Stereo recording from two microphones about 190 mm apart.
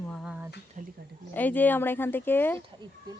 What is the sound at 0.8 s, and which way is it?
Speech, 40° right (ahead or behind).